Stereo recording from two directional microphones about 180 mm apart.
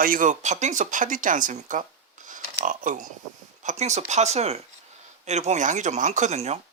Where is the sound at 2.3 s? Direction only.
45° right (ahead or behind).